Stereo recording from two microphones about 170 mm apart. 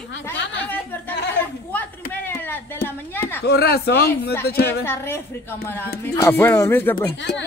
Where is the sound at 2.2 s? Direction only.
10° left (ahead or behind).